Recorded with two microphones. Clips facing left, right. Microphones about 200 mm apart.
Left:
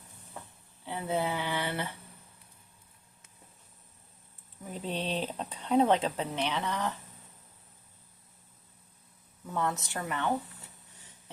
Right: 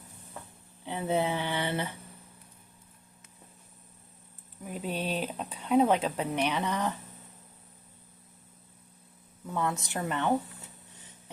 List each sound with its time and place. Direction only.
0.9 s speech: 20° right (ahead or behind)
4.6 s speech: 10° right (ahead or behind)
9.5 s speech: 15° right (ahead or behind)